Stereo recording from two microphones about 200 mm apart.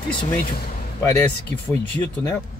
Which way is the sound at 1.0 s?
15° left (ahead or behind).